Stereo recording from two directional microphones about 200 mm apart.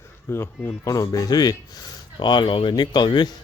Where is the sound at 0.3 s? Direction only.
10° left (ahead or behind).